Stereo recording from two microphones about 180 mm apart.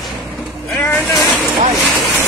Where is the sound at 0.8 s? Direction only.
15° left (ahead or behind).